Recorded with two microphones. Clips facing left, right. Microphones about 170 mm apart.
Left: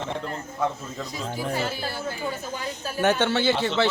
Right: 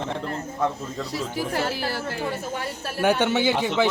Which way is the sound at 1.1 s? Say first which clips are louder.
Right 2 dB; 85° right.